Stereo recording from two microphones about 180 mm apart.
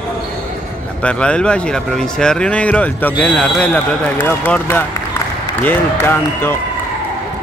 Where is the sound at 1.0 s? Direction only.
5° left (ahead or behind).